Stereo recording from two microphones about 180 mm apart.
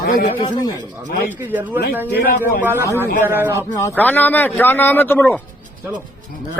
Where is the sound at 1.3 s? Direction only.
10° right (ahead or behind).